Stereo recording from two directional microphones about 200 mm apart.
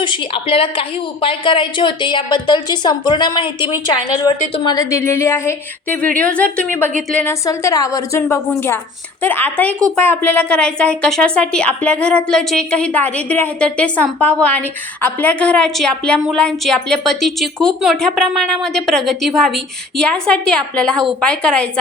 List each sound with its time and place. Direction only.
0.0 s a woman's voice: 25° left (ahead or behind); by 21.7 s 5° left (ahead or behind)